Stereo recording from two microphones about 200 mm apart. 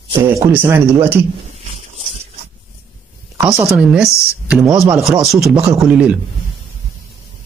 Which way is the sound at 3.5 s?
Centre (ahead or behind).